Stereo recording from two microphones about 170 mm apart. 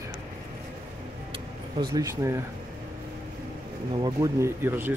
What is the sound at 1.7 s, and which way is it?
Speech, 20° right (ahead or behind).